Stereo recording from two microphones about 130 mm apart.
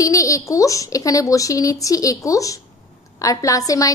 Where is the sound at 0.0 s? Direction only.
25° left (ahead or behind).